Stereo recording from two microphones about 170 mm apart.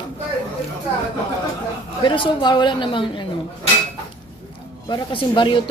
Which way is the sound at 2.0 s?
30° left (ahead or behind).